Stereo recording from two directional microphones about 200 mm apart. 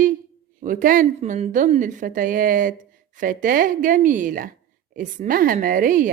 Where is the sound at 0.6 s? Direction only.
40° right (ahead or behind).